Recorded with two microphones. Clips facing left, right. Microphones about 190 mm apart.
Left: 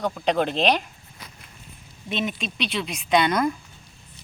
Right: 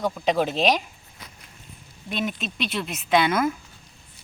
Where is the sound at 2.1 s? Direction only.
Centre (ahead or behind).